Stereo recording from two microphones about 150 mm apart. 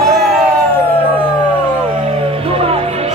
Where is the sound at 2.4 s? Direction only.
40° right (ahead or behind).